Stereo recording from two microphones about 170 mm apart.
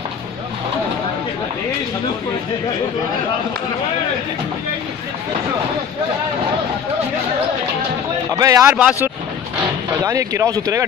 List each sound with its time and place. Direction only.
8.4 s speech: 20° right (ahead or behind)
8.7 s speech: 5° right (ahead or behind)
10.0 s speech: 20° right (ahead or behind)